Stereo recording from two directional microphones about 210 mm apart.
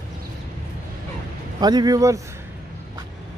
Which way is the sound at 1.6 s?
20° right (ahead or behind).